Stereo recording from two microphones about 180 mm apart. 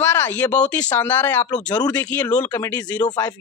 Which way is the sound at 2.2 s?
20° left (ahead or behind).